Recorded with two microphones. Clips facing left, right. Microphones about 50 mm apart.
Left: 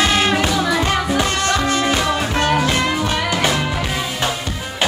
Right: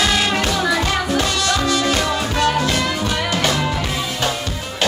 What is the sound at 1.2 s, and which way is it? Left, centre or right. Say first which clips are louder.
Music: left 1 dB; left.